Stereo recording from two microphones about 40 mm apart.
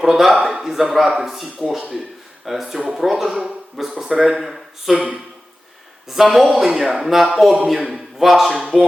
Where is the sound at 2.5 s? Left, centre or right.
Centre.